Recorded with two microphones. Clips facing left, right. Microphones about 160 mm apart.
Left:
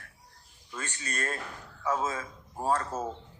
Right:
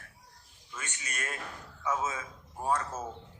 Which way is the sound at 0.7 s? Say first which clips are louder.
Left 4 dB; 35° left (ahead or behind).